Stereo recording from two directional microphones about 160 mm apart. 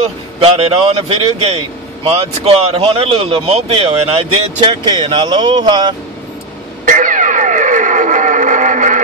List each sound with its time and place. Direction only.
0.4 s speech: 40° right (ahead or behind)
6.9 s music: 55° right (ahead or behind)